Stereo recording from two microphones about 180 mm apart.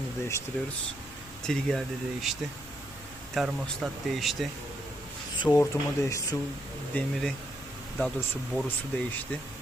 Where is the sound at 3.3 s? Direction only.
Centre (ahead or behind).